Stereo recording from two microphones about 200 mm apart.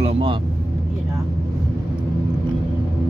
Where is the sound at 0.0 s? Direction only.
30° right (ahead or behind).